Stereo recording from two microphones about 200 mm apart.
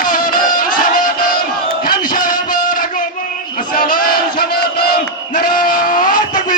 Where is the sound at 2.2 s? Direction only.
40° left (ahead or behind).